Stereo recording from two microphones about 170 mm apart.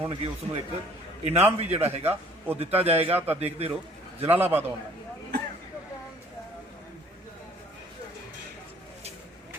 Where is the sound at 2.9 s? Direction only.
10° right (ahead or behind).